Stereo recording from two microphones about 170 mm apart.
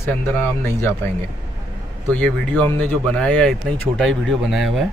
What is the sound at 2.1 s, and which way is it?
Speech, 10° left (ahead or behind).